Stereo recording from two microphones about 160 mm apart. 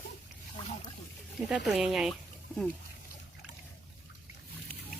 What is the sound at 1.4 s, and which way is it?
Speech, centre (ahead or behind).